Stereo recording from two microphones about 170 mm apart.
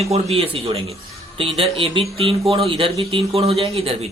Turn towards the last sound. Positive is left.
turn(degrees=-35)  # may be behind; listen again after turning